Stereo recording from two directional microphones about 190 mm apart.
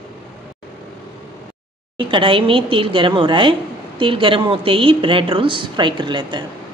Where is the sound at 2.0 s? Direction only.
25° right (ahead or behind).